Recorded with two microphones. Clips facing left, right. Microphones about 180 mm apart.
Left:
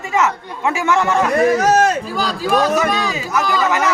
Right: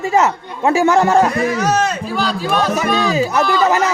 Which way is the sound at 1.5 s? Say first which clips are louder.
Left 3 dB; 50° left (ahead or behind).